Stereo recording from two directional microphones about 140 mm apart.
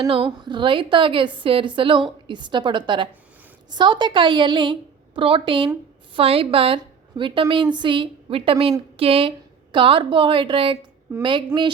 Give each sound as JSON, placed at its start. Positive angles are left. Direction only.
{"t": 0.2, "sound": "a woman's voice", "side_deg": -30}